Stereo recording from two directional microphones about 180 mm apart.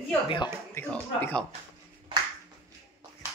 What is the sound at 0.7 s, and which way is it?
Speech, 10° left (ahead or behind).